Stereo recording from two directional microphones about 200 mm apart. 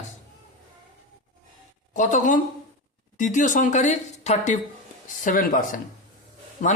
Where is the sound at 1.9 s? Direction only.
40° left (ahead or behind).